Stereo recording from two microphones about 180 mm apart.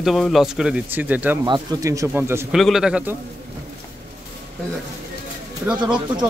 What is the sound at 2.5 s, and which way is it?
Speech, centre (ahead or behind).